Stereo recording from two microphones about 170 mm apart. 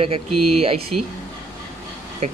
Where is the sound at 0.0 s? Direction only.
35° right (ahead or behind).